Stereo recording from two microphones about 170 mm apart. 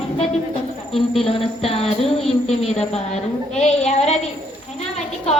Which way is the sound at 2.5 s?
40° left (ahead or behind).